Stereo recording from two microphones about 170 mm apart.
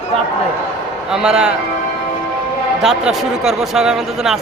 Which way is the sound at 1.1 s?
5° right (ahead or behind).